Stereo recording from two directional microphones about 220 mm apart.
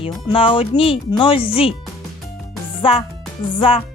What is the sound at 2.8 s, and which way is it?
Speech, 25° left (ahead or behind).